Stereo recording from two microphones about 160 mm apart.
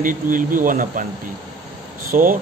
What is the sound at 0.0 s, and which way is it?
Speech, 60° right (ahead or behind).